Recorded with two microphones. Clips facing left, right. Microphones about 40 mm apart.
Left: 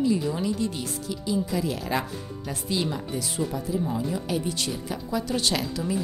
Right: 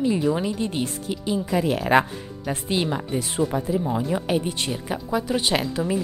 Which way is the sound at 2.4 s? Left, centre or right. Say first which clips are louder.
Right 4 dB; right.